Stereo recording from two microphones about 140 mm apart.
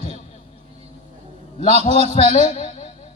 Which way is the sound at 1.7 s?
50° left (ahead or behind).